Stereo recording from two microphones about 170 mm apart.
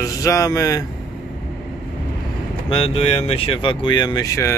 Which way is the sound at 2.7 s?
30° left (ahead or behind).